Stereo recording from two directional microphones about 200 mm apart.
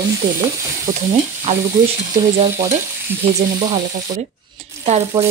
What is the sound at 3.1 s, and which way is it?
Speech, 10° right (ahead or behind).